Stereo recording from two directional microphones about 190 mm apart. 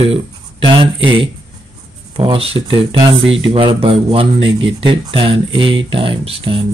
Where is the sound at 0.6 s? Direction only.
25° right (ahead or behind).